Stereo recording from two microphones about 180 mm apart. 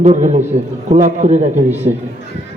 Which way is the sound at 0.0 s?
40° right (ahead or behind).